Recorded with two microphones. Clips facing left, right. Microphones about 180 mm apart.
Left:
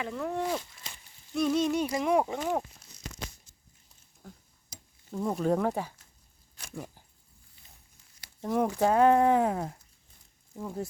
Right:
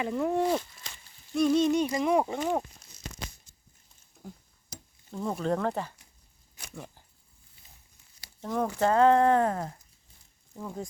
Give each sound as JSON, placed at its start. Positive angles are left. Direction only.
{"t": 0.1, "sound": "speech", "side_deg": -15}
{"t": 1.4, "sound": "speech", "side_deg": 5}
{"t": 4.2, "sound": "a sound", "side_deg": -10}
{"t": 5.1, "sound": "speech", "side_deg": 5}
{"t": 6.7, "sound": "a sound", "side_deg": 10}
{"t": 8.2, "sound": "speech", "side_deg": 15}